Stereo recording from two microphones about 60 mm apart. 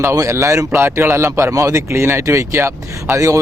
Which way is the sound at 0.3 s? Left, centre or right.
Right.